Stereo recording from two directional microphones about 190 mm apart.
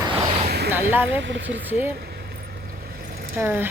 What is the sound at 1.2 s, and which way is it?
Speech, 70° right (ahead or behind).